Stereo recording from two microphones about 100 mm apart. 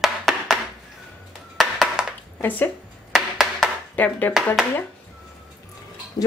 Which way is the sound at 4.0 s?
20° left (ahead or behind).